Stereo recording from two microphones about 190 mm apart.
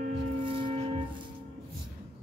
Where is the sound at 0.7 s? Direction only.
35° right (ahead or behind).